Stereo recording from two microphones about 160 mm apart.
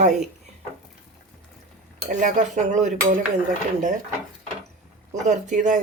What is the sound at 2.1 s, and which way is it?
Speech, 55° right (ahead or behind).